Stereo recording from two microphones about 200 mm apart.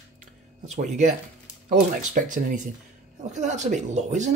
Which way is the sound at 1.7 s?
40° right (ahead or behind).